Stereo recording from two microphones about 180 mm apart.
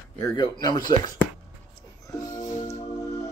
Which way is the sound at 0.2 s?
20° left (ahead or behind).